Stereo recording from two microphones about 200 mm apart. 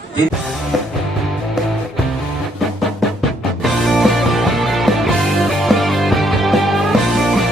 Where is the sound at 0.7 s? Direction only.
Centre (ahead or behind).